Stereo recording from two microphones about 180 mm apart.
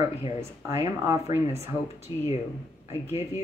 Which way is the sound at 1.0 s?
15° right (ahead or behind).